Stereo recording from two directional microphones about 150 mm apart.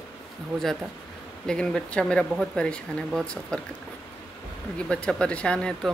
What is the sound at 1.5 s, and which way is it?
Speech, 5° left (ahead or behind).